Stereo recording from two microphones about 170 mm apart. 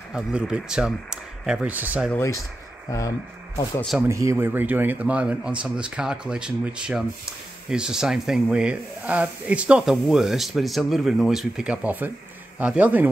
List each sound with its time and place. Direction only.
0.1 s speech: 5° right (ahead or behind)
2.9 s speech: 20° left (ahead or behind)
4.1 s speech: 15° right (ahead or behind)